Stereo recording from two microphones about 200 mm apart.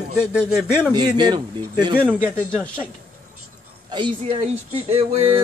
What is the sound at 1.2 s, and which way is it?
Speech, 20° right (ahead or behind).